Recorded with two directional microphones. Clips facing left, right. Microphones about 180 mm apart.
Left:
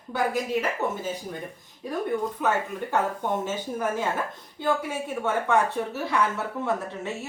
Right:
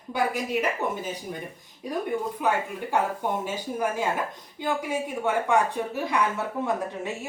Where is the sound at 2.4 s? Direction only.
15° right (ahead or behind).